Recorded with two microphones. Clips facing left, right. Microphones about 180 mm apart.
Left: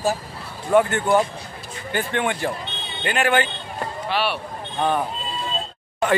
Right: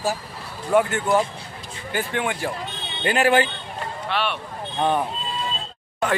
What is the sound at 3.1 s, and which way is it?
Speech, 35° right (ahead or behind).